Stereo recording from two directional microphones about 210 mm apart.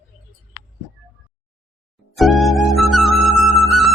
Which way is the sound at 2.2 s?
Centre (ahead or behind).